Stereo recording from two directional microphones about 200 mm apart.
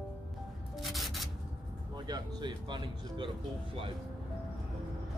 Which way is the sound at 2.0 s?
20° right (ahead or behind).